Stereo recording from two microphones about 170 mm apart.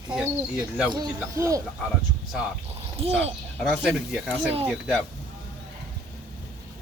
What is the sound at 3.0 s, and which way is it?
Speech, 35° right (ahead or behind).